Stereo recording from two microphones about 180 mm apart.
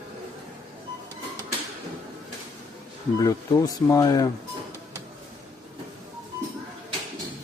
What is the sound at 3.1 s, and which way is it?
Speech, 20° left (ahead or behind).